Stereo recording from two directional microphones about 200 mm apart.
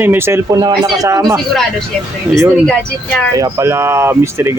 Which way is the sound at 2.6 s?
10° left (ahead or behind).